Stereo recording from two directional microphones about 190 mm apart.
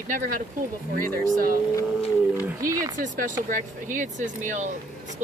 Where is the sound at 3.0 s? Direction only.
45° right (ahead or behind).